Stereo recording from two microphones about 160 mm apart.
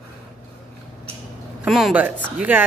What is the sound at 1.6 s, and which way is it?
Speech, centre (ahead or behind).